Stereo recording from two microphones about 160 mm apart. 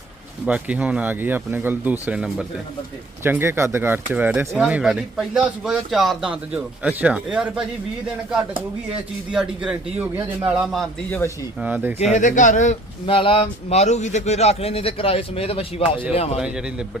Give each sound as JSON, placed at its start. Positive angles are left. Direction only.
{"t": 0.4, "sound": "speech", "side_deg": -10}
{"t": 9.3, "sound": "a man's voice", "side_deg": -5}
{"t": 12.1, "sound": "speech", "side_deg": 50}
{"t": 13.1, "sound": "a man's voice", "side_deg": 35}